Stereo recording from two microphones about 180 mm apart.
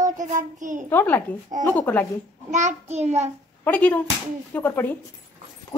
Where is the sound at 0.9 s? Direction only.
10° left (ahead or behind).